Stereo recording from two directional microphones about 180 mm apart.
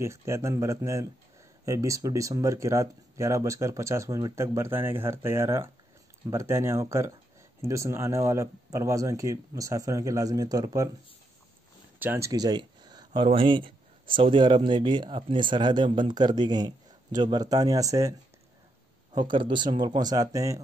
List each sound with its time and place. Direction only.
0.0 s speech: 15° right (ahead or behind)
12.0 s speech: 15° right (ahead or behind)
19.1 s speech: 25° right (ahead or behind)